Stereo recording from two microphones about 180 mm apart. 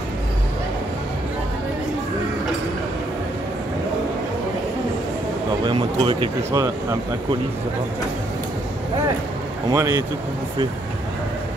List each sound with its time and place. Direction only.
5.7 s speech: 25° right (ahead or behind)
9.7 s speech: 20° right (ahead or behind)